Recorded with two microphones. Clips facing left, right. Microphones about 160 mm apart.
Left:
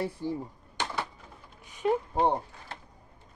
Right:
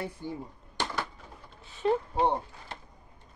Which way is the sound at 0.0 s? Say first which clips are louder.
Left 5 dB; 35° left (ahead or behind).